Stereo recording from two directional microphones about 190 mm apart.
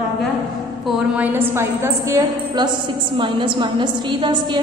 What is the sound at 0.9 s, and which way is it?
A woman's voice, 5° right (ahead or behind).